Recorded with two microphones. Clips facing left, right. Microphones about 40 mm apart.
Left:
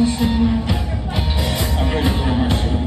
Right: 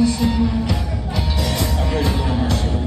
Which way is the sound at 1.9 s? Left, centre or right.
Left.